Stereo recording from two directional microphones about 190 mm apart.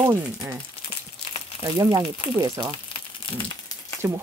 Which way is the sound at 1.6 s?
20° right (ahead or behind).